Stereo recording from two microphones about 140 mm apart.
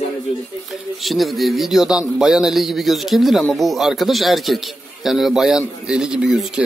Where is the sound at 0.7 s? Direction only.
Centre (ahead or behind).